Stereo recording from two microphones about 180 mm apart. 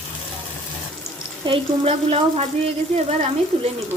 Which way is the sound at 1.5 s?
35° right (ahead or behind).